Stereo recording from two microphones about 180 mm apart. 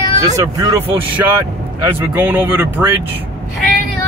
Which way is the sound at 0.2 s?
20° right (ahead or behind).